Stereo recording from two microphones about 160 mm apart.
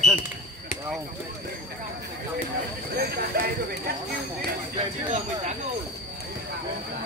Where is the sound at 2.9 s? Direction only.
75° right (ahead or behind).